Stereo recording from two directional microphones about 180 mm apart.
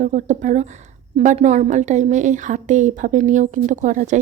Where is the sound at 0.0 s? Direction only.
40° right (ahead or behind).